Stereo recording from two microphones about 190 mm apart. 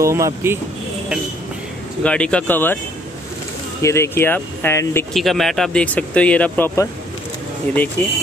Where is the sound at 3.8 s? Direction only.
15° left (ahead or behind).